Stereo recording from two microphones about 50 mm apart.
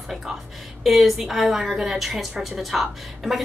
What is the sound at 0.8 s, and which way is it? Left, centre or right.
A woman's voice, centre.